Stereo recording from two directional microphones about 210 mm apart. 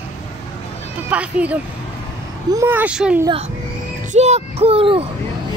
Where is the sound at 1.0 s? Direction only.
5° right (ahead or behind).